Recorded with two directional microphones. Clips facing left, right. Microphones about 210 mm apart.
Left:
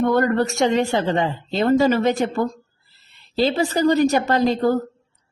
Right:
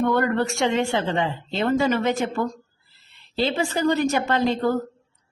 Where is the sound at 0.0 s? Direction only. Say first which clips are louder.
Left 3 dB; 40° left (ahead or behind).